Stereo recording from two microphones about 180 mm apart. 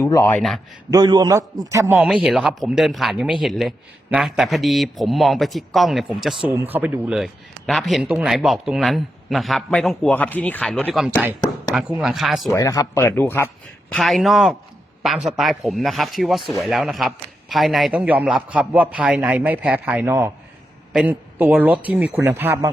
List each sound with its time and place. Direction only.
0.0 s speech: 15° left (ahead or behind)
0.3 s speech: centre (ahead or behind)
0.9 s a man's voice: 20° right (ahead or behind); by 12.5 s centre (ahead or behind)
12.5 s speech: 15° left (ahead or behind)
13.9 s a man's voice: centre (ahead or behind)